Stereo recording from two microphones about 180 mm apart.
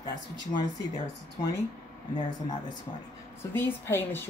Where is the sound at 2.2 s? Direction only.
25° left (ahead or behind).